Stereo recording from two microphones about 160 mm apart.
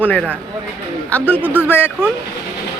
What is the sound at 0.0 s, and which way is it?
Speech, 10° left (ahead or behind).